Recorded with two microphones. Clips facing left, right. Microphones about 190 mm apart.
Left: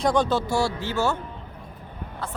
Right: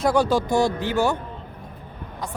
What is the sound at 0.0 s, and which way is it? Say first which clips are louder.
Speech: right 2 dB; 10° right (ahead or behind).